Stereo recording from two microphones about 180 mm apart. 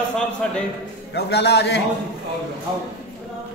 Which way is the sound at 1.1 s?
65° left (ahead or behind).